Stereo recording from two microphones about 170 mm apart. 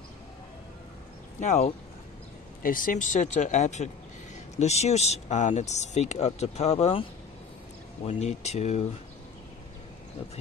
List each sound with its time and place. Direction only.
1.4 s speech: 45° left (ahead or behind)